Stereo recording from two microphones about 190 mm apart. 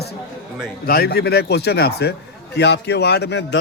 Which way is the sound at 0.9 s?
55° left (ahead or behind).